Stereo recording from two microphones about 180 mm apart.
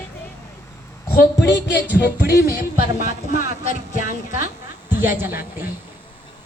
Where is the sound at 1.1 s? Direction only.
70° left (ahead or behind).